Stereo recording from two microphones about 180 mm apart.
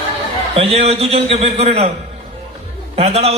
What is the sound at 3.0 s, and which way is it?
Speech, 35° right (ahead or behind).